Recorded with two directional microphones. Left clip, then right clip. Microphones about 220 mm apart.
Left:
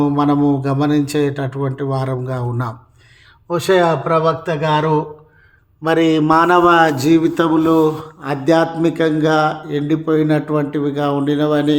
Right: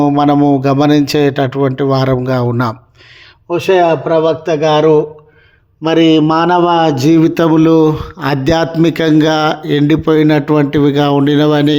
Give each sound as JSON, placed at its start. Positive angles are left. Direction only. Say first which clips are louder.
{"t": 0.0, "sound": "a man's voice", "louder": "right 5 dB", "side_deg": -35}
{"t": 8.2, "sound": "speech", "louder": "right 2 dB", "side_deg": -45}